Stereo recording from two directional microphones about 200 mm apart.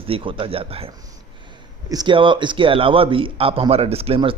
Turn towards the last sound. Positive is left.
turn(degrees=-30)  # may be behind; listen again after turning